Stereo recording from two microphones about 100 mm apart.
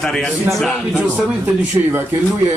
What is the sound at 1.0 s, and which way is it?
Speech, 15° right (ahead or behind).